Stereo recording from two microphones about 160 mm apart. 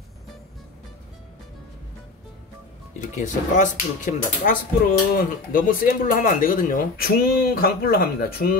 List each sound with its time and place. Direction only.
3.2 s speech: 50° left (ahead or behind)
5.1 s speech: 65° left (ahead or behind)